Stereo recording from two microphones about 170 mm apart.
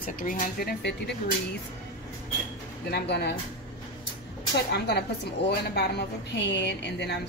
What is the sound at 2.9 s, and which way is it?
Speech, 75° left (ahead or behind).